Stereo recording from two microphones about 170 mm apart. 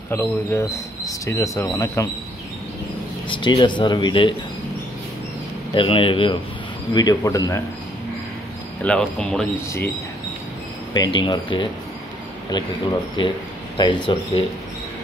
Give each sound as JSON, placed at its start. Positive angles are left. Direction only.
{"t": 0.1, "sound": "speech", "side_deg": 15}
{"t": 3.3, "sound": "speech", "side_deg": 30}
{"t": 5.8, "sound": "speech", "side_deg": 30}
{"t": 8.8, "sound": "speech", "side_deg": 5}
{"t": 10.9, "sound": "speech", "side_deg": 25}
{"t": 13.2, "sound": "speech", "side_deg": 30}